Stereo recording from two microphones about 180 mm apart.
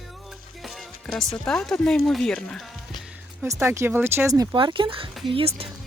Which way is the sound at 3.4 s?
15° right (ahead or behind).